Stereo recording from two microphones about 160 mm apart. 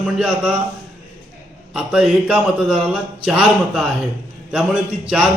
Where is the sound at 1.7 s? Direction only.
5° right (ahead or behind).